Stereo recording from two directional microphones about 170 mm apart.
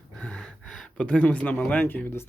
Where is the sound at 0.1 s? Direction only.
5° left (ahead or behind).